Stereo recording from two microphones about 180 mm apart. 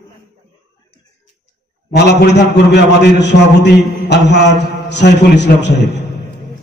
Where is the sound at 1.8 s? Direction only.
70° left (ahead or behind).